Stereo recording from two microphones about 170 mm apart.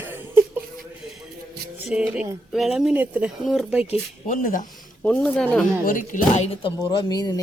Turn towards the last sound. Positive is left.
turn(degrees=20)  # may be behind; listen again after turning